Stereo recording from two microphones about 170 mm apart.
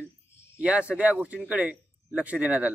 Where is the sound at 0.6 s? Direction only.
5° right (ahead or behind).